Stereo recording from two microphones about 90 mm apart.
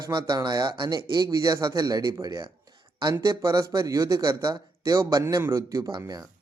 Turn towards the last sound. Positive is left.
turn(degrees=-40)  # may be behind; listen again after turning